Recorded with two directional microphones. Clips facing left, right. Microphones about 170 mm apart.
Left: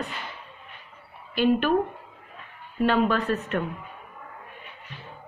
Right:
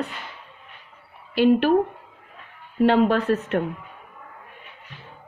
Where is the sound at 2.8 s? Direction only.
75° right (ahead or behind).